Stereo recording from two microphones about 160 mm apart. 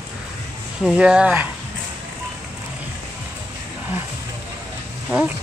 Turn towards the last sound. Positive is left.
turn(degrees=-10)  # may be behind; listen again after turning